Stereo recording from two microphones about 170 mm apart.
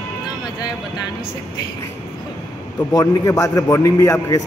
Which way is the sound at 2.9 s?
20° left (ahead or behind).